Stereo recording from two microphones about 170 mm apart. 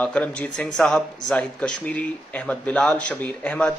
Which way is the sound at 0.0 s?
5° left (ahead or behind).